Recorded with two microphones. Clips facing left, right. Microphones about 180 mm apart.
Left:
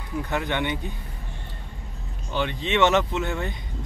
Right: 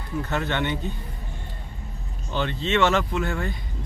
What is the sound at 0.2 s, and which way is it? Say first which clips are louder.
Speech: even; 15° left (ahead or behind).